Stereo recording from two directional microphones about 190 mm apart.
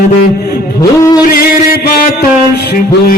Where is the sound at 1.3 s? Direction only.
50° left (ahead or behind).